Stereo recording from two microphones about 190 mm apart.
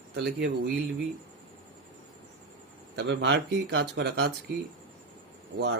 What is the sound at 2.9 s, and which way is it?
Speech, 70° right (ahead or behind).